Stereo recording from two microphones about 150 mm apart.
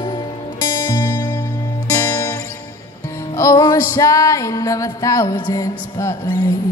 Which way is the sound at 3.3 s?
20° left (ahead or behind).